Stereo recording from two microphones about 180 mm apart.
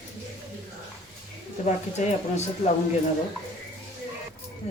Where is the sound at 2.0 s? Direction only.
40° left (ahead or behind).